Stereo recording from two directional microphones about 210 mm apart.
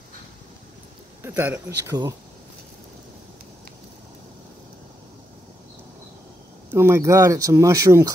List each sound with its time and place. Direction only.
1.2 s speech: 10° right (ahead or behind)
6.7 s speech: 10° right (ahead or behind)